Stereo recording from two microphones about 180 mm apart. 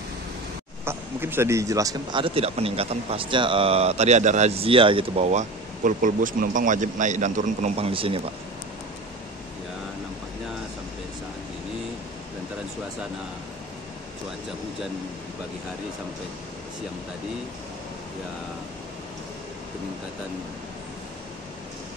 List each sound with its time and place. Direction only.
0.8 s speech: 15° right (ahead or behind); by 8.2 s 30° right (ahead or behind)